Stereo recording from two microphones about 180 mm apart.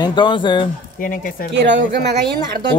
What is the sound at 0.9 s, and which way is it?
Speech, 50° left (ahead or behind).